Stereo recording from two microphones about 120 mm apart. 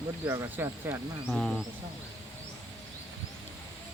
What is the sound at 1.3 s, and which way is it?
Speech, centre (ahead or behind).